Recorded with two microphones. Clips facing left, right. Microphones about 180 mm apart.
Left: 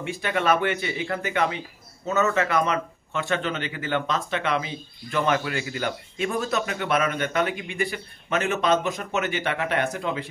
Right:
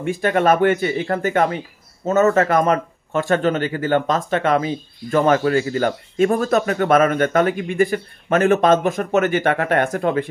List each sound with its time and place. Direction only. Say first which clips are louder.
0.0 s speech: right 8 dB; 45° right (ahead or behind)